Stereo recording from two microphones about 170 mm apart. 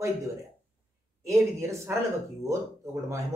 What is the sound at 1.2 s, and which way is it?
Speech, 15° right (ahead or behind).